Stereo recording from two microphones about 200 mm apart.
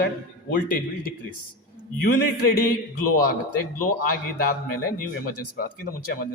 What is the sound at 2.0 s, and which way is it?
Speech, 50° left (ahead or behind).